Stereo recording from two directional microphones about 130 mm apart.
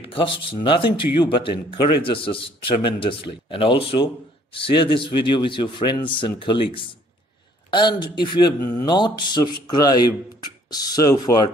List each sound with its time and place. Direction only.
0.0 s a man's voice: 45° left (ahead or behind); by 11.3 s 25° left (ahead or behind)